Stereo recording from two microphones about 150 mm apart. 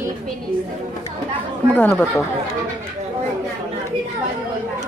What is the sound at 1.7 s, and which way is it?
Speech, 10° left (ahead or behind).